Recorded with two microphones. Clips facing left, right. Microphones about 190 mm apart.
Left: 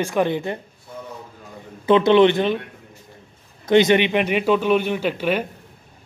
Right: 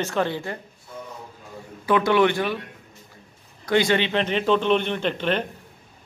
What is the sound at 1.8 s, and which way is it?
Speech, 20° left (ahead or behind).